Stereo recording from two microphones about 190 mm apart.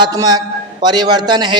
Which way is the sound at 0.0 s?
20° right (ahead or behind).